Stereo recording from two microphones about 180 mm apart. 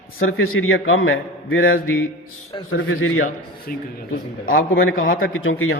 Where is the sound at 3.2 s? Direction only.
50° left (ahead or behind).